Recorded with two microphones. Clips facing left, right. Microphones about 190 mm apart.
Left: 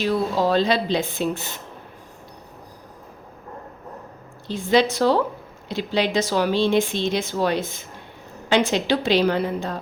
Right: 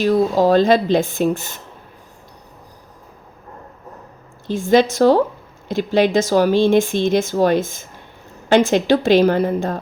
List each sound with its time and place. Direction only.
0.0 s speech: 45° right (ahead or behind)
4.4 s speech: 45° right (ahead or behind)